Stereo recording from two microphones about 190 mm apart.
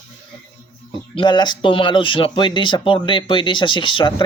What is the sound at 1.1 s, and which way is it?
Speech, 25° left (ahead or behind).